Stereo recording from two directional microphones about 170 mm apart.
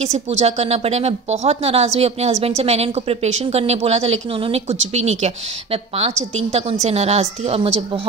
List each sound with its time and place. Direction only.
0.0 s a woman's voice: 40° right (ahead or behind)